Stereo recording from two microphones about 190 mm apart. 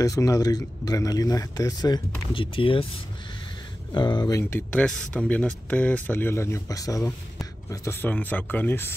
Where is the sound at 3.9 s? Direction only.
25° left (ahead or behind).